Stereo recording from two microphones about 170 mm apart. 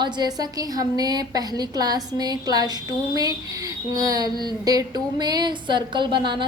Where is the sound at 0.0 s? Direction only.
25° right (ahead or behind).